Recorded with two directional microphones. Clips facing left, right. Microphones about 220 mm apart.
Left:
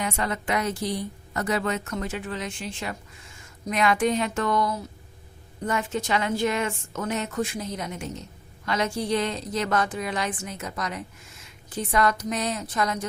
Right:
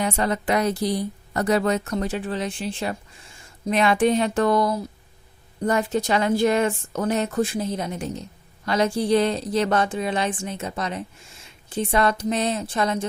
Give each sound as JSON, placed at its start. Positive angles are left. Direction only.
{"t": 0.0, "sound": "a woman's voice", "side_deg": -35}